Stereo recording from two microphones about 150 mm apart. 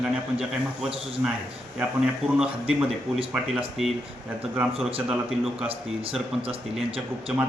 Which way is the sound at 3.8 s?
Centre (ahead or behind).